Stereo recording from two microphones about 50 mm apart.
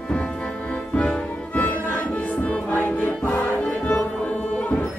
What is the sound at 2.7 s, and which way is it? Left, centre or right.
Music, left.